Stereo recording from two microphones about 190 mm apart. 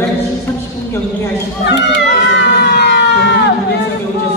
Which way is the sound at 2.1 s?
65° left (ahead or behind).